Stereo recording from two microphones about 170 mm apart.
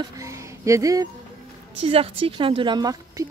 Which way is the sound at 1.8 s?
35° right (ahead or behind).